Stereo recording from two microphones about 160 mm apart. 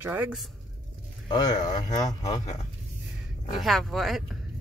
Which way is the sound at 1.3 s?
25° left (ahead or behind).